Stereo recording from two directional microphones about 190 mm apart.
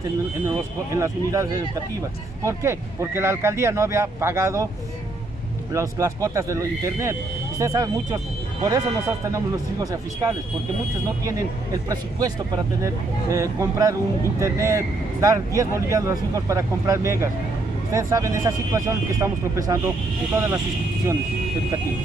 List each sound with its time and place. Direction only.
0.5 s speech: 15° right (ahead or behind)
5.7 s speech: 15° right (ahead or behind)